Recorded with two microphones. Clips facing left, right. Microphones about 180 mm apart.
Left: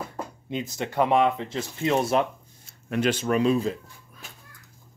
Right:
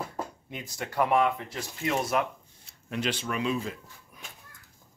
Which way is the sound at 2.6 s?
50° left (ahead or behind).